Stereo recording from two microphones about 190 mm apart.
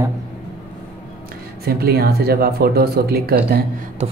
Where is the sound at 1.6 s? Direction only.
55° right (ahead or behind).